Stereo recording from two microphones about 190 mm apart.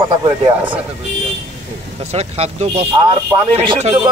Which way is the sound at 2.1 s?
35° right (ahead or behind).